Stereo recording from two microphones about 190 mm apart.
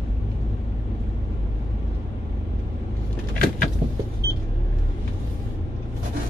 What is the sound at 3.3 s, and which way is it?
Vehicle, 50° left (ahead or behind).